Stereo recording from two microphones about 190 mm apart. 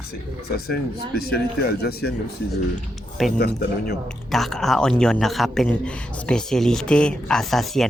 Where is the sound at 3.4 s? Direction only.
60° left (ahead or behind).